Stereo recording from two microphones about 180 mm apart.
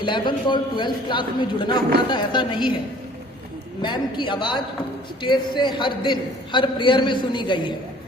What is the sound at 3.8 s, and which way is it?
A man's voice, 25° left (ahead or behind).